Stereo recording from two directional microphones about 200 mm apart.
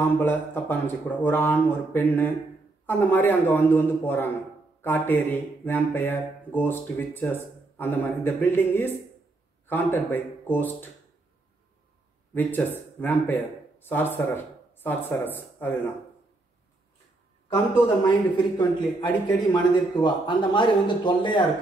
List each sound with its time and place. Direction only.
0.0 s speech: 10° left (ahead or behind)
12.4 s speech: 10° left (ahead or behind)
18.0 s a man's voice: 20° left (ahead or behind)